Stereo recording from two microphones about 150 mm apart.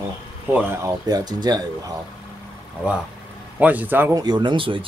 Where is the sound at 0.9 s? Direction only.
25° right (ahead or behind).